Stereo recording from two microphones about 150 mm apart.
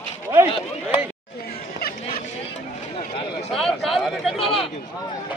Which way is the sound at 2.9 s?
40° left (ahead or behind).